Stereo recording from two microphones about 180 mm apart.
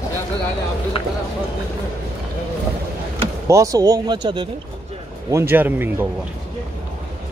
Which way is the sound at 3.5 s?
20° right (ahead or behind).